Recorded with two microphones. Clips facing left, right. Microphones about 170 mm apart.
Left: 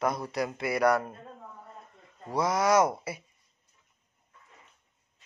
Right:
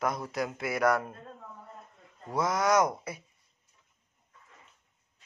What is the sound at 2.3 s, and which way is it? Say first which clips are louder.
Speech: left 2 dB; centre (ahead or behind).